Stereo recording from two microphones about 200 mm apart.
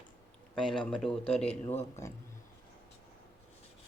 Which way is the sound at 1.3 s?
30° left (ahead or behind).